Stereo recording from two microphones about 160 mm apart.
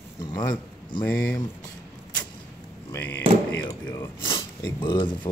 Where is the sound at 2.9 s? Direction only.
10° left (ahead or behind).